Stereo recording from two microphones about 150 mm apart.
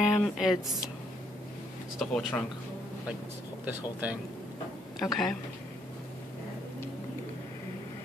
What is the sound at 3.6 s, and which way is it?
Speech, 10° right (ahead or behind).